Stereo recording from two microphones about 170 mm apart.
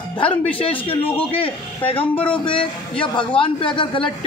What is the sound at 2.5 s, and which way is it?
Speech, 5° left (ahead or behind).